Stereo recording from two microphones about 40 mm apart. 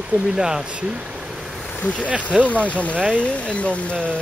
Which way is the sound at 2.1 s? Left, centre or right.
Right.